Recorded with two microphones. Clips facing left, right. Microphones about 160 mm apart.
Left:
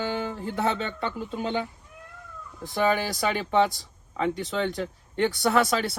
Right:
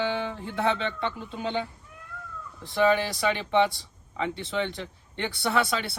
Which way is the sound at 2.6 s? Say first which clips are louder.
Right 1 dB; 45° left (ahead or behind).